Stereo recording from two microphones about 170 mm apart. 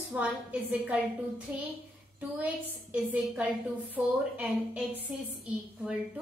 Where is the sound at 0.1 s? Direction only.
10° right (ahead or behind).